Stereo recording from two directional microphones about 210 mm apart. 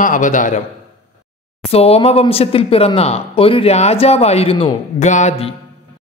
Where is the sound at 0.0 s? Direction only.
40° left (ahead or behind).